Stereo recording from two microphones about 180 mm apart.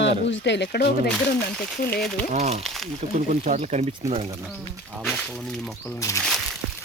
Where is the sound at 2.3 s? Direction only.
35° right (ahead or behind).